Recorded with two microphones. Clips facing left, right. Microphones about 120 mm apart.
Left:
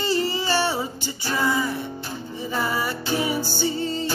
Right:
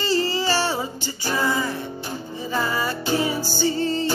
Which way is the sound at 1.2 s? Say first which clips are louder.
Right 1 dB; 20° right (ahead or behind).